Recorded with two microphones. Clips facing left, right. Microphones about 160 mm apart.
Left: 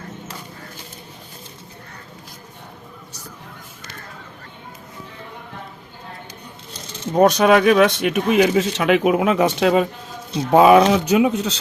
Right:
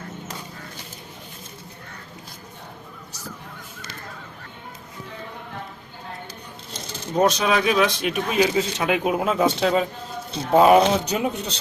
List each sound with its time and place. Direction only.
7.2 s speech: 60° left (ahead or behind)
10.5 s speech: 90° left